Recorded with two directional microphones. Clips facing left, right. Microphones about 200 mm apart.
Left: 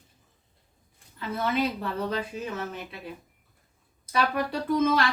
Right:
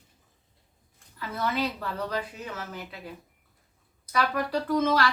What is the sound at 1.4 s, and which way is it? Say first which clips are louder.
Speech: left 2 dB; 25° left (ahead or behind).